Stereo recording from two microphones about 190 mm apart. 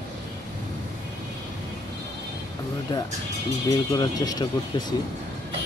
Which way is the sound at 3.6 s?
20° left (ahead or behind).